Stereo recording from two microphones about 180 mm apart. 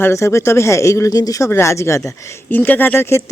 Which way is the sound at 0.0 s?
15° left (ahead or behind).